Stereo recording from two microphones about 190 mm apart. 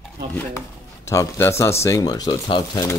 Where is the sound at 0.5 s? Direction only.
15° left (ahead or behind).